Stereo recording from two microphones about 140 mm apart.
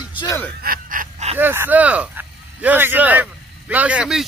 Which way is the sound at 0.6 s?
80° right.